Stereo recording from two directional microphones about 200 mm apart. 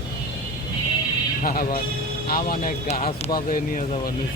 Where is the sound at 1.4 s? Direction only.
45° left (ahead or behind).